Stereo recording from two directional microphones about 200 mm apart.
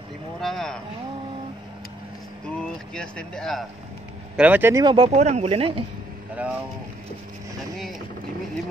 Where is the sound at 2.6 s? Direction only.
5° left (ahead or behind).